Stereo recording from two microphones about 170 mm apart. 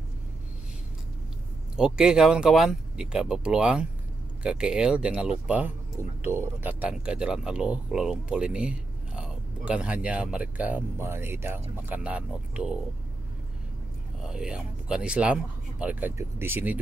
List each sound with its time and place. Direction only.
1.8 s speech: 5° right (ahead or behind)
14.2 s speech: 5° right (ahead or behind)